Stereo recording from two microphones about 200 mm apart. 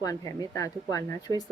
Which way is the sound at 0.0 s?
15° left (ahead or behind).